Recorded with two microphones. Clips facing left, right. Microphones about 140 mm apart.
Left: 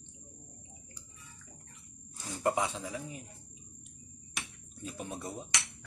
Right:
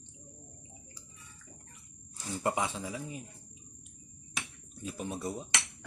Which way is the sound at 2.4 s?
Centre (ahead or behind).